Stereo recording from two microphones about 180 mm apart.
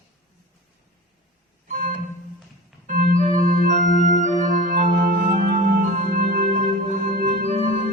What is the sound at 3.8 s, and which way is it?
Music, 45° right (ahead or behind).